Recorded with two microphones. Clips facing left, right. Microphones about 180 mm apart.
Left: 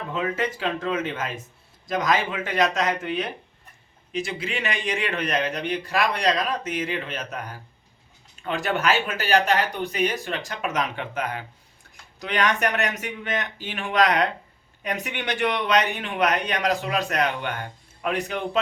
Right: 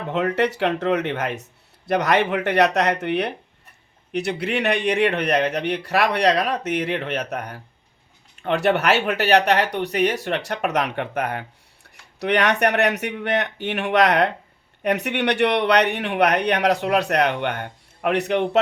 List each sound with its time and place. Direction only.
0.1 s speech: 70° right (ahead or behind)